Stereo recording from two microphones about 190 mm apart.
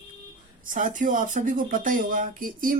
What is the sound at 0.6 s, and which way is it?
Speech, 45° right (ahead or behind).